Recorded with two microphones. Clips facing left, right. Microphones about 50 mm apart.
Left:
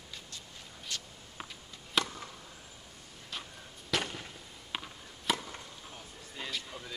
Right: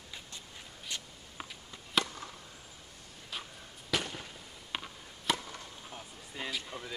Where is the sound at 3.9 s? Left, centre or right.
Centre.